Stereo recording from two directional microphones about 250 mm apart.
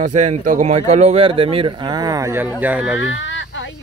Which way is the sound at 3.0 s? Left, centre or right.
Left.